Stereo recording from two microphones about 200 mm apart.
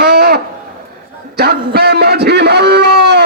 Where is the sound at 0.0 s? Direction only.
55° right (ahead or behind).